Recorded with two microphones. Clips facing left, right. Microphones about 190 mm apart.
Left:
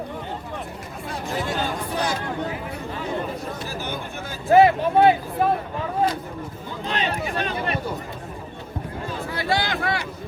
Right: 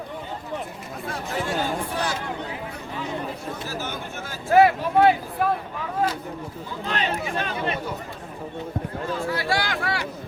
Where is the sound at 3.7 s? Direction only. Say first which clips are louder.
Left 1 dB; 15° left (ahead or behind).